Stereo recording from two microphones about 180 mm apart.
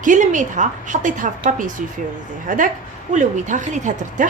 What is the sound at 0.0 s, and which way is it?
A woman's voice, 45° right (ahead or behind).